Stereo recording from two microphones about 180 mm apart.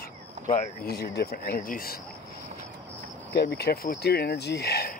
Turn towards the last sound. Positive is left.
turn(degrees=60)  # may be behind; listen again after turning